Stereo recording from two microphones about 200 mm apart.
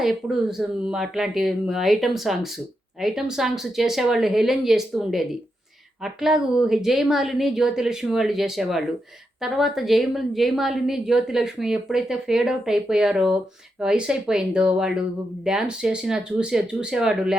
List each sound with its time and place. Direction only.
0.0 s a woman's voice: centre (ahead or behind)